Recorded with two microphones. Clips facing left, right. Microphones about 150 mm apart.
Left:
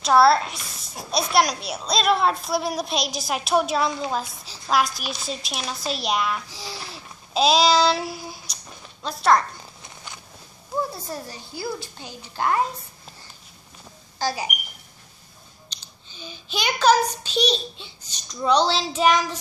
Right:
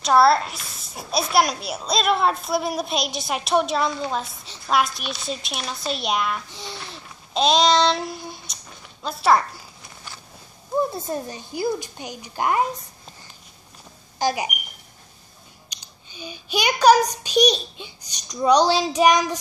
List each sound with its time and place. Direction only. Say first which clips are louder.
0.0 s a woman's voice: even; centre (ahead or behind)
10.8 s a child's voice: right 4 dB; 20° right (ahead or behind)
14.1 s speech: right 3 dB; 15° right (ahead or behind)
15.7 s a child's voice: right 2 dB; 15° right (ahead or behind)